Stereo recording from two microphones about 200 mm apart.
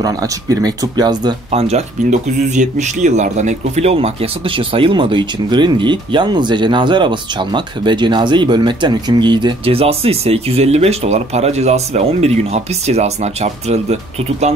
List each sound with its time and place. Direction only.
0.0 s speech: 20° right (ahead or behind); by 13.9 s 35° right (ahead or behind)